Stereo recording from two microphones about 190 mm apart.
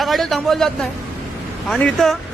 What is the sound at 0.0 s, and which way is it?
A man's voice, centre (ahead or behind).